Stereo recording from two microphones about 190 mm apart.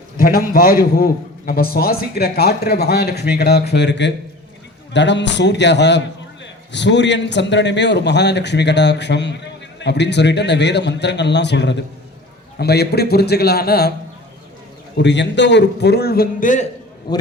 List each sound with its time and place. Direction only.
0.2 s a man's voice: 50° left (ahead or behind)
15.0 s a man's voice: 70° left (ahead or behind); by 16.6 s 45° left (ahead or behind)
17.1 s a man's voice: 20° left (ahead or behind)